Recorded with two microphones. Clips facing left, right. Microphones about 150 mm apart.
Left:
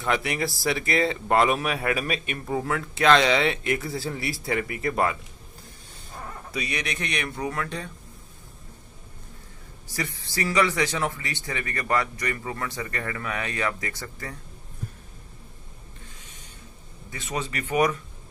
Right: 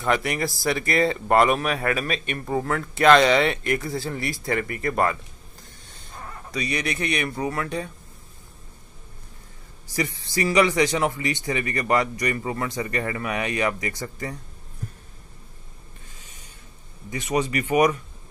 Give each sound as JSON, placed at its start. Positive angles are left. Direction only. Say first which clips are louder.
{"t": 0.0, "sound": "a man's voice", "louder": "right 2 dB", "side_deg": 0}
{"t": 6.5, "sound": "a man's voice", "louder": "right 4 dB", "side_deg": 0}
{"t": 9.8, "sound": "a man's voice", "louder": "right 5 dB", "side_deg": -15}
{"t": 17.1, "sound": "a man's voice", "louder": "right 7 dB", "side_deg": -15}